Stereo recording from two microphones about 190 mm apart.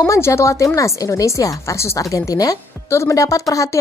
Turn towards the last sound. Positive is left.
turn(degrees=15)  # may be behind; listen again after turning